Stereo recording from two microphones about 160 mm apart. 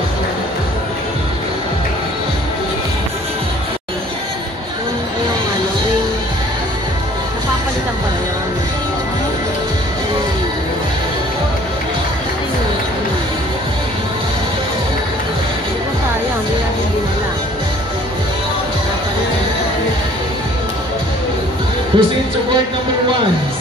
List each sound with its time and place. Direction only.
21.9 s music: 30° right (ahead or behind)